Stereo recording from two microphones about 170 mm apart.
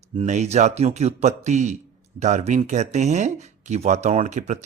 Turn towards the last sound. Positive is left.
turn(degrees=-45)  # may be behind; listen again after turning